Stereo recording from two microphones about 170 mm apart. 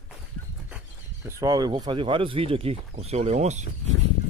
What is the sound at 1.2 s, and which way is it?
Speech, 20° right (ahead or behind).